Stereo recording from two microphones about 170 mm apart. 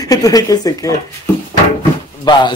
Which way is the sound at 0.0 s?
20° left (ahead or behind).